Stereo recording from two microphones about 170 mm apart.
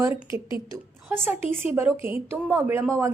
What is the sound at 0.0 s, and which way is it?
A woman's voice, 15° right (ahead or behind).